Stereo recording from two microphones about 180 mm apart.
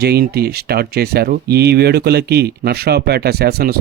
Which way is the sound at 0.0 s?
60° right (ahead or behind).